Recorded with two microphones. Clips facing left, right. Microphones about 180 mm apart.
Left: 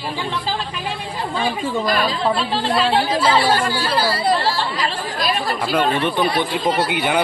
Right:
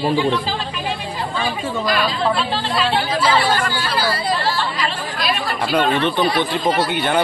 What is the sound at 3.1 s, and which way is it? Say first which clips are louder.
Speech: left 1 dB; 30° left (ahead or behind).